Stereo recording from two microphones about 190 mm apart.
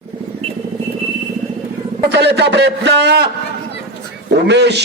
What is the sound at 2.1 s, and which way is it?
A man's voice, 65° right (ahead or behind).